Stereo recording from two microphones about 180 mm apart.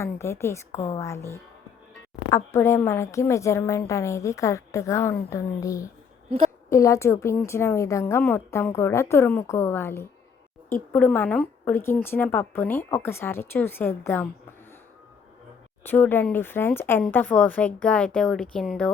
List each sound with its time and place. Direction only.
0.0 s a woman's voice: 15° left (ahead or behind)
15.8 s a woman's voice: 10° left (ahead or behind)